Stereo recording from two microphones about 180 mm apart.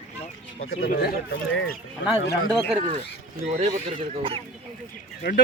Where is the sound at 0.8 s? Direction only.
60° left (ahead or behind).